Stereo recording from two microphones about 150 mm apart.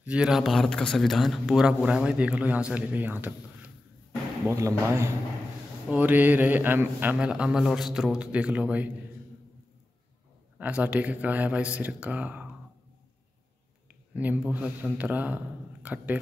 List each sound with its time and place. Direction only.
0.0 s a man's voice: 5° right (ahead or behind)
10.6 s a man's voice: 10° right (ahead or behind)
14.1 s a man's voice: 10° right (ahead or behind)